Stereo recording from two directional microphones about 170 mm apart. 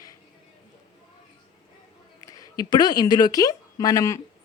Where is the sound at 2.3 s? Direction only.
20° left (ahead or behind).